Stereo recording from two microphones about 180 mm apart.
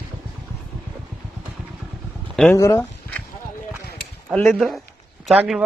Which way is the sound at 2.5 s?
15° left (ahead or behind).